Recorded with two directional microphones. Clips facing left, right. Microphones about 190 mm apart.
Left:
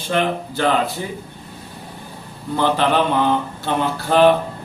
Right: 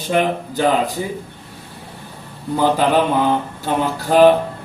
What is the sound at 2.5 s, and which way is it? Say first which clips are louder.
Speech: right 2 dB; 10° right (ahead or behind).